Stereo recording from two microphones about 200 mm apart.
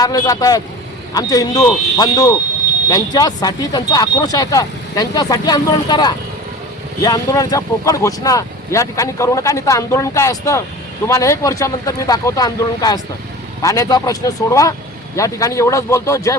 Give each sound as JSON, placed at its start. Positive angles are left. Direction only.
{"t": 0.0, "sound": "speech", "side_deg": 20}